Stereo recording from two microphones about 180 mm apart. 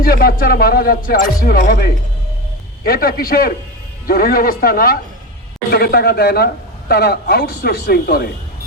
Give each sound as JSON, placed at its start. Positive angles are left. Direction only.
{"t": 0.0, "sound": "speech", "side_deg": 55}
{"t": 2.8, "sound": "a man's voice", "side_deg": 55}